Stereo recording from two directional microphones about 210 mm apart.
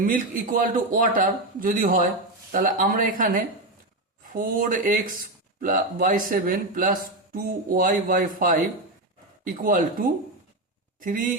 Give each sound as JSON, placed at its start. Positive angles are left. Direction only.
{"t": 0.0, "sound": "a man's voice", "side_deg": -40}